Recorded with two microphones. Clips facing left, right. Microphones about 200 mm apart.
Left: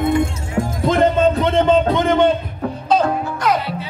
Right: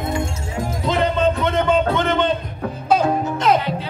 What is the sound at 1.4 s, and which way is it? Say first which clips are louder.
Music: left 4 dB; 30° left (ahead or behind).